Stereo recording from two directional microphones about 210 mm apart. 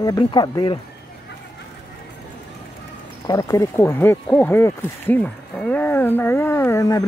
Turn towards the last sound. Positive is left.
turn(degrees=15)  # may be behind; listen again after turning